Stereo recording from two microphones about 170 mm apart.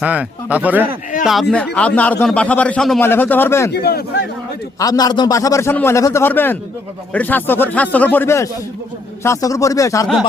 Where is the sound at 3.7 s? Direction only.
65° left (ahead or behind).